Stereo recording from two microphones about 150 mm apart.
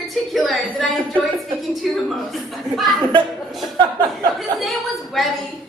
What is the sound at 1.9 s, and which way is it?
A woman's voice, centre (ahead or behind).